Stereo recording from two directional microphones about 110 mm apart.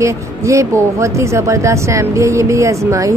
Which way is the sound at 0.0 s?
25° right (ahead or behind).